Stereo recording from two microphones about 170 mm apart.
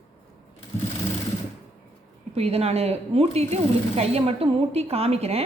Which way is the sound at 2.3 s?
35° right (ahead or behind).